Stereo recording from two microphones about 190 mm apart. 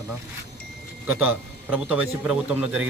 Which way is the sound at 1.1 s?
10° right (ahead or behind).